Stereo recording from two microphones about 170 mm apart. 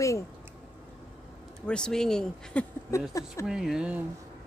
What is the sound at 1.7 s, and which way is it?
Speech, 5° left (ahead or behind).